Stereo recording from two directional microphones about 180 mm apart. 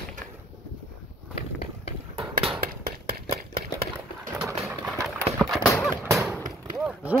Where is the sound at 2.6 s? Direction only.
55° right (ahead or behind).